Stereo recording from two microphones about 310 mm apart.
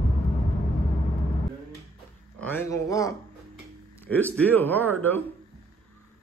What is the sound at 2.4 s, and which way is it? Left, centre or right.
Speech, centre.